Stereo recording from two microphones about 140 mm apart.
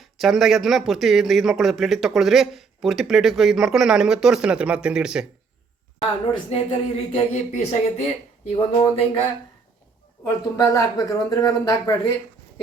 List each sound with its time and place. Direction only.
0.0 s speech: centre (ahead or behind)
6.5 s speech: 45° left (ahead or behind)
10.2 s speech: 20° left (ahead or behind)